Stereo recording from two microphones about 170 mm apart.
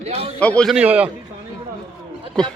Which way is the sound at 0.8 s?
5° right (ahead or behind).